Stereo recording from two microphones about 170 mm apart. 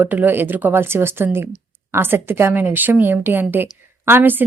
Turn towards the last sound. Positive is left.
turn(degrees=-10)  # may be behind; listen again after turning